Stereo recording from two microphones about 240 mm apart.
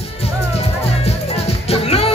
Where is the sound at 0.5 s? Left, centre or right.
Left.